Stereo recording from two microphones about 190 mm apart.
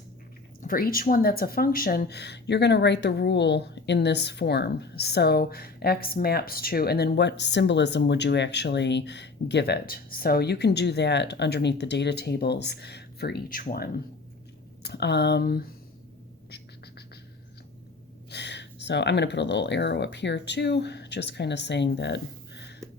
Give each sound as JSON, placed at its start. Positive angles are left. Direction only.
{"t": 0.6, "sound": "speech", "side_deg": 50}
{"t": 14.8, "sound": "speech", "side_deg": 60}
{"t": 18.3, "sound": "speech", "side_deg": 65}